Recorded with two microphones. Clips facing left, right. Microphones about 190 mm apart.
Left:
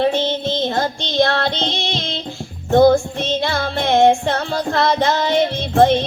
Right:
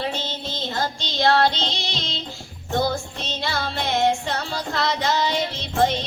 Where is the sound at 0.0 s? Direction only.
55° left (ahead or behind).